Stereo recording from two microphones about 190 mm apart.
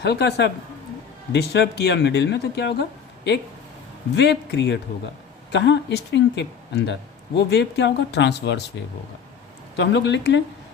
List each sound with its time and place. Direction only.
0.0 s speech: 65° left (ahead or behind)
4.1 s speech: 65° left (ahead or behind)
9.7 s speech: 70° left (ahead or behind)